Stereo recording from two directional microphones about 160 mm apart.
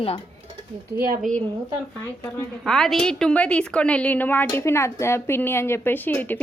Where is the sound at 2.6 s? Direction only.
Centre (ahead or behind).